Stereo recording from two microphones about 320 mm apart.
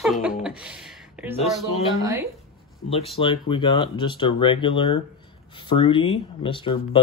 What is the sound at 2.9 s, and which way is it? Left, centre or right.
Speech, centre.